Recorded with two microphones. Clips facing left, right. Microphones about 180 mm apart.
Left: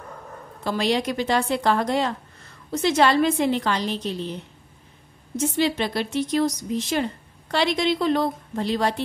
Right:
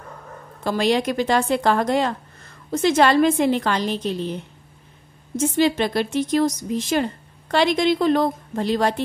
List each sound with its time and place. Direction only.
0.7 s a woman's voice: 50° right (ahead or behind)
5.3 s a woman's voice: 50° right (ahead or behind)